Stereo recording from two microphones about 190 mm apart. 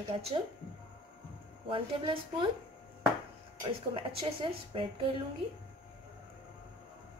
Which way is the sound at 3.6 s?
25° right (ahead or behind).